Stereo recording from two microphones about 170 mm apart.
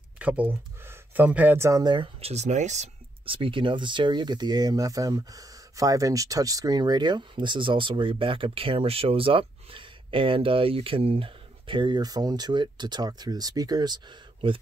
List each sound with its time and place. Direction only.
0.2 s speech: 10° right (ahead or behind); by 14.6 s 30° right (ahead or behind)